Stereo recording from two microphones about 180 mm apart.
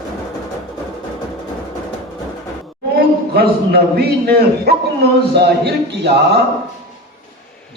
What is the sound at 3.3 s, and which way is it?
A man's voice, 60° right (ahead or behind).